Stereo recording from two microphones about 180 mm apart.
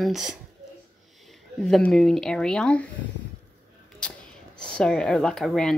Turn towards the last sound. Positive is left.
turn(degrees=5)  # may be behind; listen again after turning